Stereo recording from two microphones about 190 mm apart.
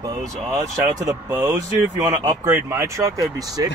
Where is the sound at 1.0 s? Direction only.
20° right (ahead or behind).